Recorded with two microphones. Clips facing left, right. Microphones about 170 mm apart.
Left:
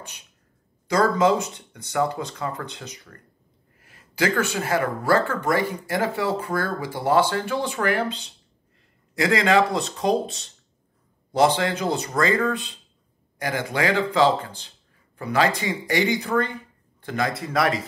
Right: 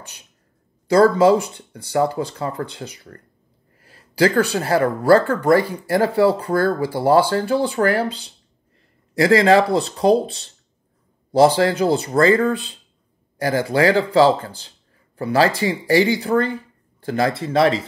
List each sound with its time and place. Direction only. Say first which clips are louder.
0.8 s speech: right 6 dB; 30° right (ahead or behind)